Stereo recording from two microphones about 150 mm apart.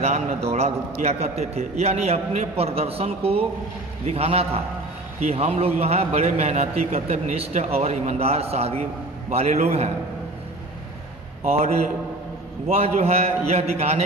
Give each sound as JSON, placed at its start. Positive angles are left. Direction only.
{"t": 0.0, "sound": "a man's voice", "side_deg": -45}
{"t": 11.4, "sound": "a man's voice", "side_deg": -45}